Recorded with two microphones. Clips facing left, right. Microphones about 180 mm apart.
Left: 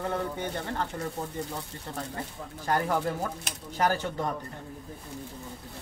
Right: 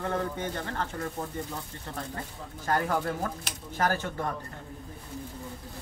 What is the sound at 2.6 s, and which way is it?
Speech, 15° left (ahead or behind).